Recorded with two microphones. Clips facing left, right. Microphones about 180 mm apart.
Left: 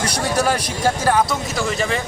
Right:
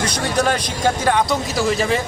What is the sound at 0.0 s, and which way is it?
Speech, 10° left (ahead or behind).